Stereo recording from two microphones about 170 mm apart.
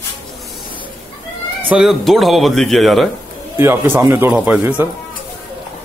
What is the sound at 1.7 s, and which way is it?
Speech, centre (ahead or behind).